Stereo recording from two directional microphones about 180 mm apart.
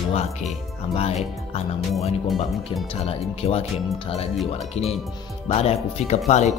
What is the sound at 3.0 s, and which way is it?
Speech, 35° left (ahead or behind).